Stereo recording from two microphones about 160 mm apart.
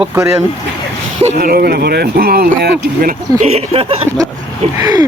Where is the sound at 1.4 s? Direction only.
75° right (ahead or behind).